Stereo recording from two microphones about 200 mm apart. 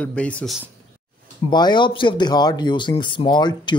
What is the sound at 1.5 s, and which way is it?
Speech, 20° left (ahead or behind).